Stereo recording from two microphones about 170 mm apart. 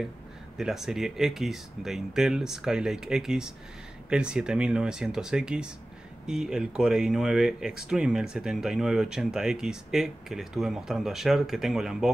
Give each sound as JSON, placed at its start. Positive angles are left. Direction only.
{"t": 0.6, "sound": "speech", "side_deg": 0}